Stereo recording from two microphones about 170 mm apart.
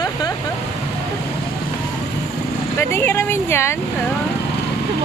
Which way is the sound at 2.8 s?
15° left (ahead or behind).